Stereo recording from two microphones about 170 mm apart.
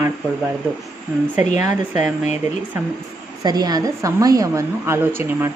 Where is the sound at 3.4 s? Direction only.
25° right (ahead or behind).